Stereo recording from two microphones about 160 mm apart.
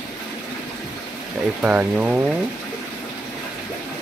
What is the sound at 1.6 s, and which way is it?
Speech, 10° right (ahead or behind).